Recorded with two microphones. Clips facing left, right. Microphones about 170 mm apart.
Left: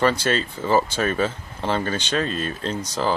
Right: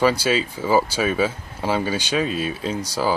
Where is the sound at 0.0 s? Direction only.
5° right (ahead or behind).